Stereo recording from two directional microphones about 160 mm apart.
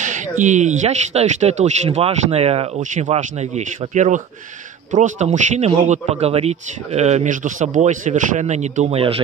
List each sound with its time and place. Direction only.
0.0 s speech: 50° right (ahead or behind)
2.8 s speech: 50° right (ahead or behind)